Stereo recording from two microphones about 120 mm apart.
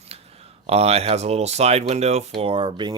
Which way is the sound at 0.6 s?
60° right (ahead or behind).